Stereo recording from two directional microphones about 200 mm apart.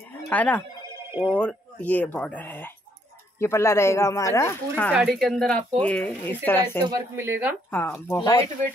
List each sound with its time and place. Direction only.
0.3 s speech: 10° left (ahead or behind)
4.9 s a woman's voice: centre (ahead or behind)
6.8 s speech: 15° right (ahead or behind)
7.7 s speech: 10° left (ahead or behind)
8.2 s speech: 20° left (ahead or behind)